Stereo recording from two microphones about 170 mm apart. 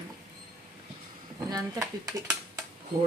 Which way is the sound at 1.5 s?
20° right (ahead or behind).